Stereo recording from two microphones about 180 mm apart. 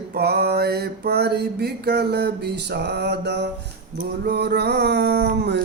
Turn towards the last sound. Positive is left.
turn(degrees=-70)  # may be behind; listen again after turning